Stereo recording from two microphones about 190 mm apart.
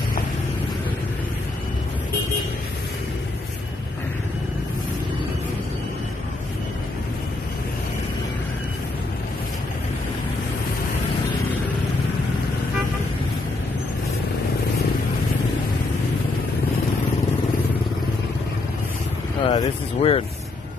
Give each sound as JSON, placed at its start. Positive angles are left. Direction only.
{"t": 19.4, "sound": "vehicle", "side_deg": 30}